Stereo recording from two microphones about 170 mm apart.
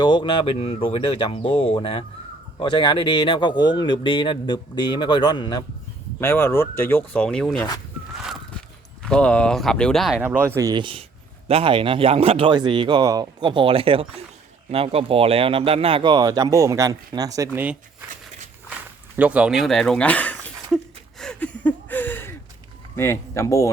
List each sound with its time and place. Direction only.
0.0 s speech: 25° left (ahead or behind)
6.1 s speech: 15° left (ahead or behind)
8.1 s a sound: centre (ahead or behind)
9.0 s speech: 5° left (ahead or behind)
10.2 s speech: 15° right (ahead or behind)
19.1 s speech: 10° right (ahead or behind); by 20.3 s 10° left (ahead or behind)
21.2 s a sound: 5° left (ahead or behind)
23.0 s speech: 15° left (ahead or behind)